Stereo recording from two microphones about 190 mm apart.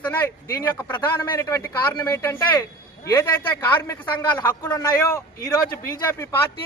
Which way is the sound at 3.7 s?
15° left (ahead or behind).